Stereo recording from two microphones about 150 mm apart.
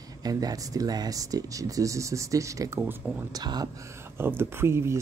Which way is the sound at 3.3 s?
25° right (ahead or behind).